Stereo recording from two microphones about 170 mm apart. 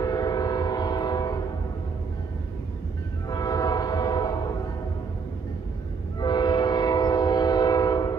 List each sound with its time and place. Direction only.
0.0 s train: 20° left (ahead or behind)
3.3 s train: 20° left (ahead or behind)
6.1 s train: 25° left (ahead or behind)